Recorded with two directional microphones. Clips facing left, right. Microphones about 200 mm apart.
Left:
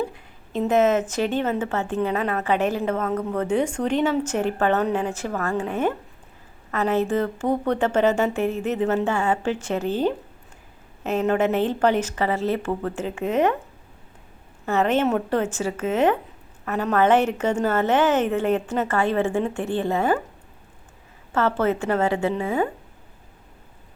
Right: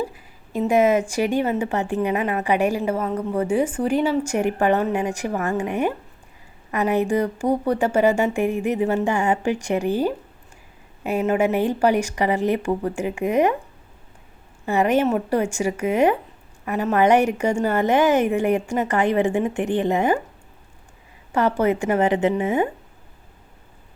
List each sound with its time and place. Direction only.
0.0 s a woman's voice: 5° right (ahead or behind)
14.7 s a woman's voice: 10° right (ahead or behind)
21.3 s a woman's voice: 15° right (ahead or behind)